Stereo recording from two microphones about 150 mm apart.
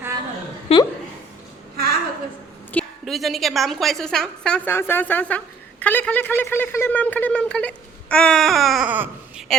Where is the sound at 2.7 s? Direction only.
5° left (ahead or behind).